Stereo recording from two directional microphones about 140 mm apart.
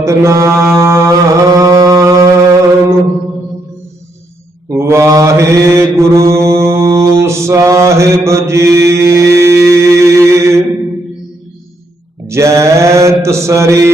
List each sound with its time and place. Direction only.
0.0 s mantra: 20° right (ahead or behind)
4.7 s mantra: 20° right (ahead or behind)
12.3 s mantra: 20° right (ahead or behind)